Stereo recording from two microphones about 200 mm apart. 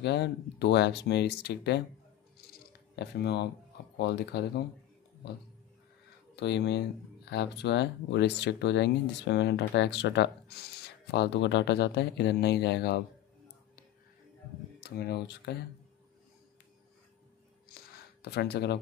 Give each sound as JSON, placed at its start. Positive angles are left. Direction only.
{"t": 0.0, "sound": "speech", "side_deg": 60}
{"t": 3.0, "sound": "speech", "side_deg": 55}
{"t": 6.3, "sound": "speech", "side_deg": 60}
{"t": 14.8, "sound": "speech", "side_deg": 55}
{"t": 18.2, "sound": "speech", "side_deg": 55}